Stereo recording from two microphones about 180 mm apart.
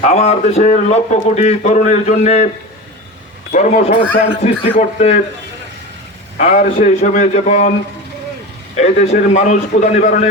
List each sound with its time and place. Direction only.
0.0 s speech: 40° left (ahead or behind)
3.5 s speech: 40° left (ahead or behind)
6.3 s speech: 40° left (ahead or behind)
8.7 s a man's voice: 40° left (ahead or behind)